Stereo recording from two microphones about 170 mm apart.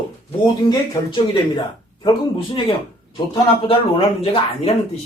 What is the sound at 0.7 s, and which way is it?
Speech, 25° left (ahead or behind).